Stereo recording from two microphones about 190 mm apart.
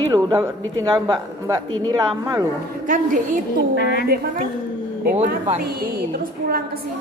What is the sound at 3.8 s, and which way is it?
Speech, 55° left (ahead or behind).